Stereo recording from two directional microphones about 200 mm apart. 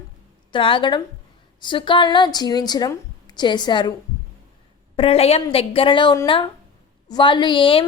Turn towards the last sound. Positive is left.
turn(degrees=25)  # may be behind; listen again after turning